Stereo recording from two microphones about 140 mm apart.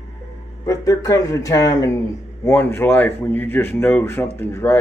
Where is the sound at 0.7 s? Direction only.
25° left (ahead or behind).